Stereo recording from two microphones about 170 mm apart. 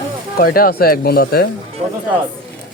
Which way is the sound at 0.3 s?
60° left (ahead or behind).